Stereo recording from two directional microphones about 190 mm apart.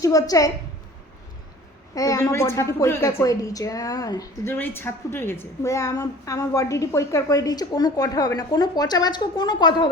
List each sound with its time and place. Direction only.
0.0 s a woman's voice: 20° left (ahead or behind)
2.0 s a woman's voice: 20° left (ahead or behind)